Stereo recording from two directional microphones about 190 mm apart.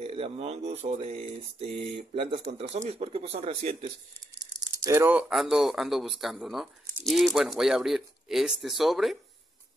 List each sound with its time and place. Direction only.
0.0 s speech: 30° right (ahead or behind)
4.6 s speech: 15° right (ahead or behind)